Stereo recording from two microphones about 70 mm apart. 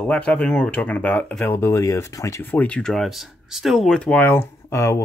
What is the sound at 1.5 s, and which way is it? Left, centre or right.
Speech, left.